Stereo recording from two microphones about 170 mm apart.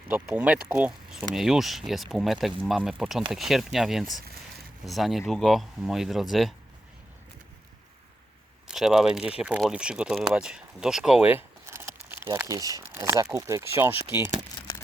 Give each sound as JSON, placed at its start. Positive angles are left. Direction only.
{"t": 0.1, "sound": "speech", "side_deg": -5}
{"t": 8.6, "sound": "speech", "side_deg": -5}